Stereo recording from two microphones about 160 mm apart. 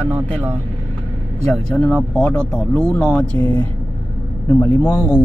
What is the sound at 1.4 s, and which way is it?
Speech, 5° left (ahead or behind).